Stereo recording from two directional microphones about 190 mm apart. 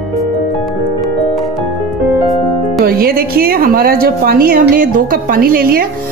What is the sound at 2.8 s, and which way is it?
Speech, 50° right (ahead or behind).